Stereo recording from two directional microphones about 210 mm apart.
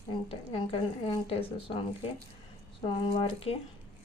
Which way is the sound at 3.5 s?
30° left (ahead or behind).